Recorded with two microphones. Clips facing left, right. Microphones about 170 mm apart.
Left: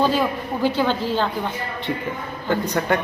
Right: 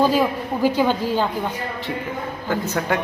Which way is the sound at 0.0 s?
10° right (ahead or behind).